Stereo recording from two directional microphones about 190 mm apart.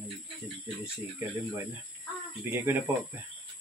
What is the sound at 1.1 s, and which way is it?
Speech, 15° right (ahead or behind).